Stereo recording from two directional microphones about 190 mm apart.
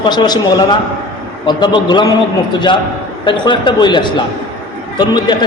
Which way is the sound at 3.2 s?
25° left (ahead or behind).